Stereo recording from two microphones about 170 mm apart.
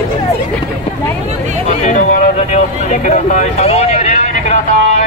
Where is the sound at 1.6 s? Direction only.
45° left (ahead or behind).